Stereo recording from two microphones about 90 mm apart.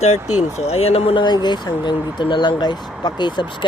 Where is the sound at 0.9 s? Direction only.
80° left.